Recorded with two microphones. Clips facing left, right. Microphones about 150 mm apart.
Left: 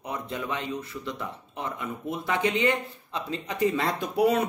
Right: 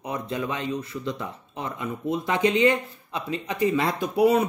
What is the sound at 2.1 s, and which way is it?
Speech, 15° right (ahead or behind).